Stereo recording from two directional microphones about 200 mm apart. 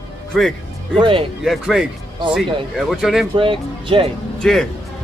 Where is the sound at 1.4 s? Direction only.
Centre (ahead or behind).